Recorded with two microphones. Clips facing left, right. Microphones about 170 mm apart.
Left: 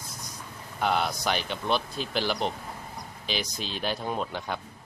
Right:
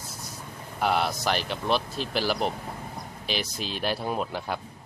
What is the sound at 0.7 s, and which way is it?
Speech, 5° right (ahead or behind).